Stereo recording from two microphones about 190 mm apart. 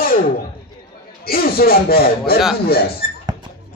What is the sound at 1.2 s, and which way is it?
A man's voice, 55° left (ahead or behind).